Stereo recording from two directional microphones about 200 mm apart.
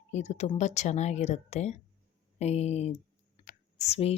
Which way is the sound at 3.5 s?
35° left (ahead or behind).